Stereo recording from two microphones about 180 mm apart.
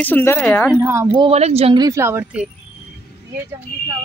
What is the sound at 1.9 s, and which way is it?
Speech, 15° right (ahead or behind).